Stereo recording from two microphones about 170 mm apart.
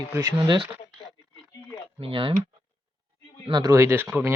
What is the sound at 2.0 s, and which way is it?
Speech, 30° right (ahead or behind).